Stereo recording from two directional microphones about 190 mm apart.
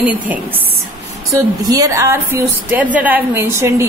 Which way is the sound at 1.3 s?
20° right (ahead or behind).